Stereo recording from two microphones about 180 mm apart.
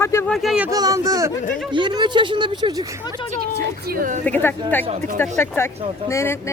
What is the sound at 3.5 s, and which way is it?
Speech, 55° right (ahead or behind).